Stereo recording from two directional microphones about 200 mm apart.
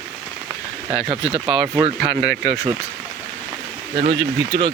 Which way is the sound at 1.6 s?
5° right (ahead or behind).